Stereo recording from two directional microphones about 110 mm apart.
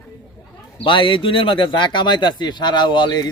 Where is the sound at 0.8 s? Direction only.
50° left (ahead or behind).